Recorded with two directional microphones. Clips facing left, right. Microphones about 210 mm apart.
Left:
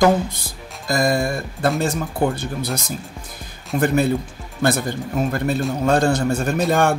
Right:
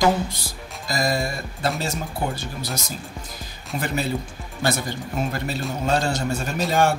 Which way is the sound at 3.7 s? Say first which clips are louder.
Left 8 dB; 50° left (ahead or behind).